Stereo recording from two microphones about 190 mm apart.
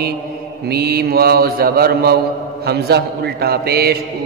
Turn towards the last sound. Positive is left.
turn(degrees=-55)  # may be behind; listen again after turning